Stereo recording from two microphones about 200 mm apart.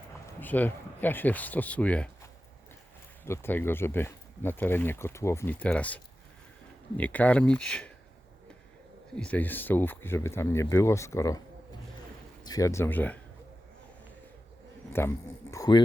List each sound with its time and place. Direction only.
0.3 s speech: 10° left (ahead or behind)
3.2 s speech: 10° left (ahead or behind)
9.1 s speech: 5° left (ahead or behind)
12.5 s speech: 15° left (ahead or behind)
14.9 s speech: 15° left (ahead or behind)